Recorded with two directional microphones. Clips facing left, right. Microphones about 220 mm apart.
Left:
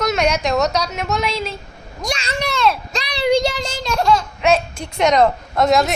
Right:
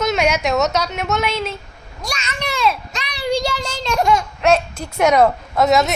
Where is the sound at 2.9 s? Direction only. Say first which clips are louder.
Left 5 dB; 35° left (ahead or behind).